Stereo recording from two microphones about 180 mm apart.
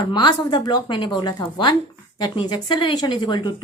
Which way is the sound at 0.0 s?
25° left (ahead or behind).